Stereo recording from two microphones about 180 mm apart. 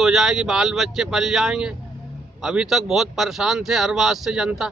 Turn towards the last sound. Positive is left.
turn(degrees=-5)  # may be behind; listen again after turning